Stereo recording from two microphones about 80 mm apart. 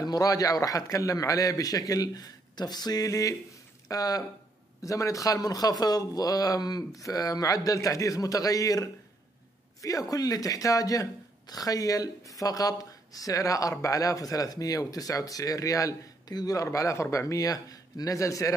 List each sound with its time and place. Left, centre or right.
0.0 s speech: left